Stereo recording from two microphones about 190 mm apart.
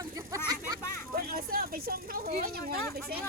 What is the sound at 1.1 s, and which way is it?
Speech, 50° right (ahead or behind).